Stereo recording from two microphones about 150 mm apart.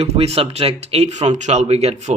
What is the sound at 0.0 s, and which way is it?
A man's voice, 45° right (ahead or behind).